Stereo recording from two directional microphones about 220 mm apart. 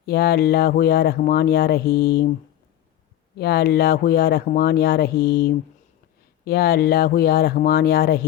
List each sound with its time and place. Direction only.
0.0 s speech: 45° left (ahead or behind)
3.3 s speech: 45° left (ahead or behind)